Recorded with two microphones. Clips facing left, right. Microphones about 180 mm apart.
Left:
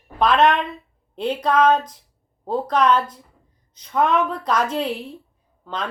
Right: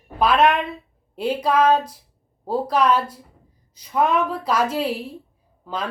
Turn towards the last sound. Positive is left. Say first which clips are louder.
# right 1 dB
turn(degrees=-5)  # may be behind; listen again after turning